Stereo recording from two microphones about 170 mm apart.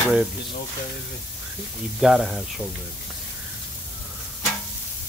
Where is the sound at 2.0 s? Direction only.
Centre (ahead or behind).